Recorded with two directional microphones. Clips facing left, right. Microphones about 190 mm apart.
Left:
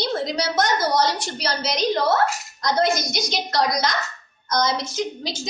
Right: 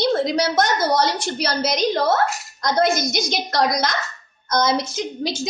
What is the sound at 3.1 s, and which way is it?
A child's voice, 50° right (ahead or behind).